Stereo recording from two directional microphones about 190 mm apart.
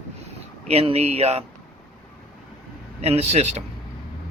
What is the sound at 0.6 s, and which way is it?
Speech, 30° right (ahead or behind).